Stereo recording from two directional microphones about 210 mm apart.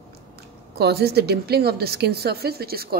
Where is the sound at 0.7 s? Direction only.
50° right (ahead or behind).